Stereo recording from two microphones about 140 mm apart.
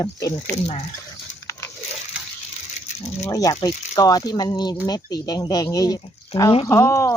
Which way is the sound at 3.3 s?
25° left (ahead or behind).